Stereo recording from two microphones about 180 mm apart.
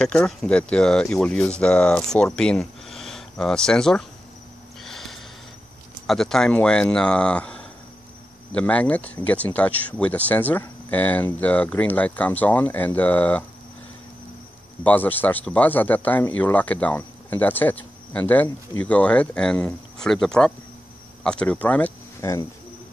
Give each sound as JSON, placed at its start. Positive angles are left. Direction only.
{"t": 0.0, "sound": "speech", "side_deg": 5}
{"t": 4.8, "sound": "snort", "side_deg": 0}
{"t": 6.0, "sound": "speech", "side_deg": 0}
{"t": 14.8, "sound": "speech", "side_deg": 10}